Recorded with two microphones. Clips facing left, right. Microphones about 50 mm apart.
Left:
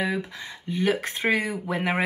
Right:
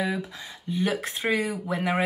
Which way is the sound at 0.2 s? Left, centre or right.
Left.